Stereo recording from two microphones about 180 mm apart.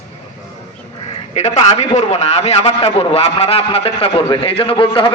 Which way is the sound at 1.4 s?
40° left (ahead or behind).